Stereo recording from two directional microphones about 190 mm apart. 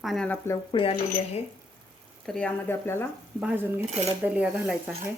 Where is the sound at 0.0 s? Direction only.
Centre (ahead or behind).